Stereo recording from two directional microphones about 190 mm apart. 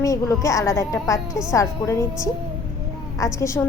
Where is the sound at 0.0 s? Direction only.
15° left (ahead or behind).